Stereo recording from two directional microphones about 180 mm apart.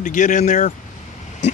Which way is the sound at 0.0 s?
45° left (ahead or behind).